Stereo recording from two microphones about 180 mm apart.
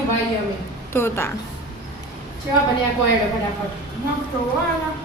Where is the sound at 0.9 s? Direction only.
15° left (ahead or behind).